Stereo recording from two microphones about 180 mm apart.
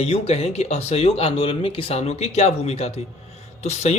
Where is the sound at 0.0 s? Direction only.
35° left (ahead or behind).